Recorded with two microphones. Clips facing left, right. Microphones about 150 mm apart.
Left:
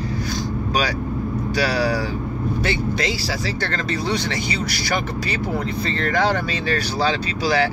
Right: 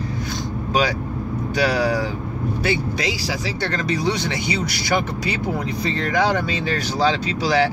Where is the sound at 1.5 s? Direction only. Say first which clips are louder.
Right 2 dB; 20° right (ahead or behind).